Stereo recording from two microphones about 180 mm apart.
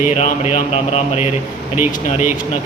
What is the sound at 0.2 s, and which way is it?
Speech, 35° left (ahead or behind).